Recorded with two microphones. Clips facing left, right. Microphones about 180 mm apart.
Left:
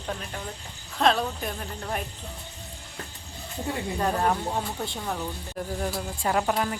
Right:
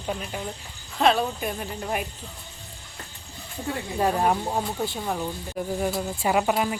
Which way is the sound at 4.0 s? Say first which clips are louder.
Right 3 dB; 10° right (ahead or behind).